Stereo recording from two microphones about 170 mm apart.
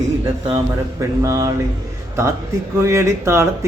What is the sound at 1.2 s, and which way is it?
Speech, 20° right (ahead or behind).